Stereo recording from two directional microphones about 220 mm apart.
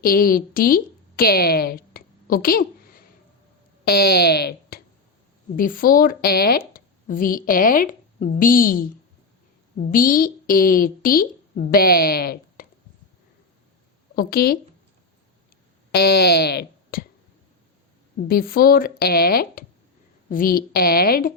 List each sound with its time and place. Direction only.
0.0 s a woman's voice: 40° left (ahead or behind)
14.2 s speech: 45° left (ahead or behind)
15.9 s speech: 45° left (ahead or behind)
18.2 s speech: 40° left (ahead or behind)